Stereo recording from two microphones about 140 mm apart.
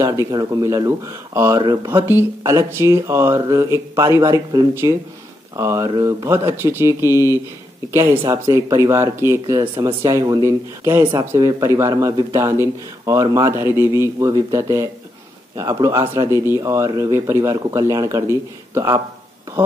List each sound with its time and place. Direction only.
0.0 s speech: 20° right (ahead or behind)
2.0 s speech: 20° right (ahead or behind)
7.1 s speech: 25° left (ahead or behind)
7.9 s speech: 20° right (ahead or behind)